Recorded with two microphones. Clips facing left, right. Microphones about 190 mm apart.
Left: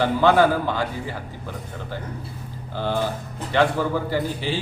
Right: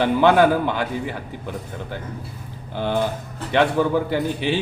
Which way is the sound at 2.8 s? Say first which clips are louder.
Right 2 dB; 20° right (ahead or behind).